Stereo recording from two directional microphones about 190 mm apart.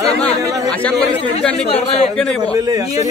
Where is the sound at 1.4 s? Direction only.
5° left (ahead or behind).